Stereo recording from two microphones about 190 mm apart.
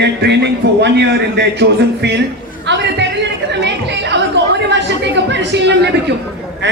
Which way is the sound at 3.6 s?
65° right (ahead or behind).